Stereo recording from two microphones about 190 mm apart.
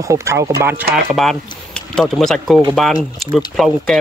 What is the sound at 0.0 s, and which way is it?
Speech, 15° right (ahead or behind).